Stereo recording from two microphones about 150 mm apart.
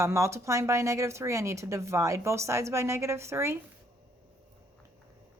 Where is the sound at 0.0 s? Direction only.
20° right (ahead or behind).